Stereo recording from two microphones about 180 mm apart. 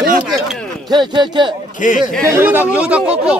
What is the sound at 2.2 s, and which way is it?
Speech, 10° right (ahead or behind).